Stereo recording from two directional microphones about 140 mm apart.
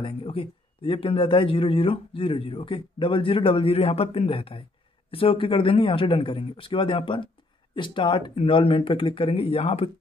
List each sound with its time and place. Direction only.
0.0 s speech: 40° left (ahead or behind)